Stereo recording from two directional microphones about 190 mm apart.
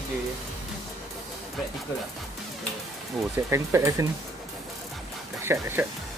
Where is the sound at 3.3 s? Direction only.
15° right (ahead or behind).